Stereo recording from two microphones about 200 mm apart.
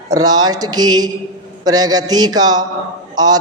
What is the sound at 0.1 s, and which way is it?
A man's voice, 20° right (ahead or behind).